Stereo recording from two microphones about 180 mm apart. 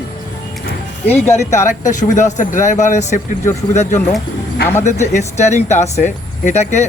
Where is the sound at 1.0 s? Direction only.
10° left (ahead or behind).